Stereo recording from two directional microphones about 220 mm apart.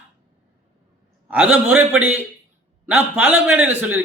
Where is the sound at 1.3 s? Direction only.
5° right (ahead or behind).